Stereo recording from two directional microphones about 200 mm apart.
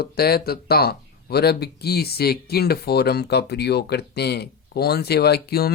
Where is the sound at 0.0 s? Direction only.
50° left (ahead or behind).